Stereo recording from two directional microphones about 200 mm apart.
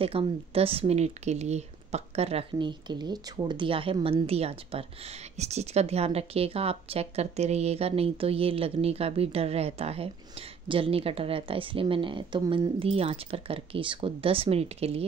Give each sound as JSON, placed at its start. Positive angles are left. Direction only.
{"t": 0.0, "sound": "a woman's voice", "side_deg": -30}